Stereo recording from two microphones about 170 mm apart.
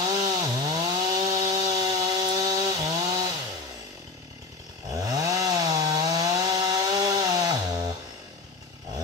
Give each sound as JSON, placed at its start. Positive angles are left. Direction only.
{"t": 0.0, "sound": "chainsaw", "side_deg": -20}
{"t": 4.8, "sound": "chainsaw", "side_deg": -20}